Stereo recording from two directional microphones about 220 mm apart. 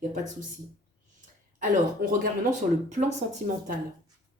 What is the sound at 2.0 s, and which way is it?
Speech, 35° right (ahead or behind).